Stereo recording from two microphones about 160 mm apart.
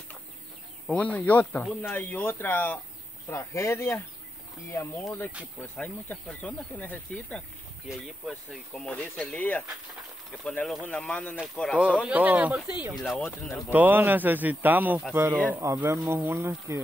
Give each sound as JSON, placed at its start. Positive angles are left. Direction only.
{"t": 0.8, "sound": "speech", "side_deg": 10}
{"t": 12.1, "sound": "a man's voice", "side_deg": -10}
{"t": 13.7, "sound": "a man's voice", "side_deg": -10}